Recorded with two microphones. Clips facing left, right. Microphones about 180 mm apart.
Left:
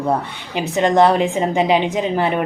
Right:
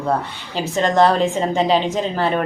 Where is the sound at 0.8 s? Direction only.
15° left (ahead or behind).